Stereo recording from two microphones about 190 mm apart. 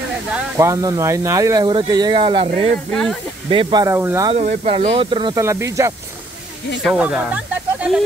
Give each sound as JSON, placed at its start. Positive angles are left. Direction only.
{"t": 0.6, "sound": "speech", "side_deg": -15}
{"t": 2.9, "sound": "speech", "side_deg": 5}
{"t": 3.4, "sound": "speech", "side_deg": -25}
{"t": 4.3, "sound": "speech", "side_deg": -30}